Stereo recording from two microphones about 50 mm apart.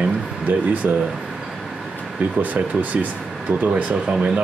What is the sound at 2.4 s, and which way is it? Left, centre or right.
Speech, right.